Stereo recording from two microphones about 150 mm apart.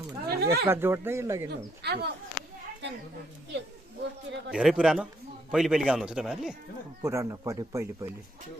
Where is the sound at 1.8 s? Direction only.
90° right.